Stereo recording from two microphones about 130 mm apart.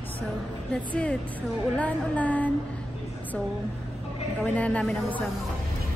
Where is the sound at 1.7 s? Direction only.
10° left (ahead or behind).